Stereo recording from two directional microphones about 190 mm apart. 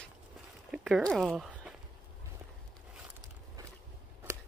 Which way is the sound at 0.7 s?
Centre (ahead or behind).